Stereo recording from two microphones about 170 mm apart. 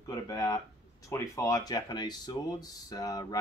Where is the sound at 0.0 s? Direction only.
20° left (ahead or behind).